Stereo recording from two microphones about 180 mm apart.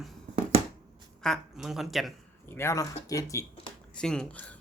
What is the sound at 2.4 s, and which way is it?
Speech, 15° left (ahead or behind).